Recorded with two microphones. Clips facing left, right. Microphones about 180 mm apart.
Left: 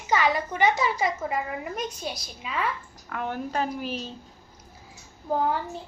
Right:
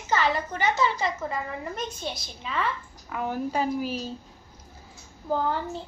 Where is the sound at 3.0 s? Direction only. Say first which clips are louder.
Right 2 dB; 5° right (ahead or behind).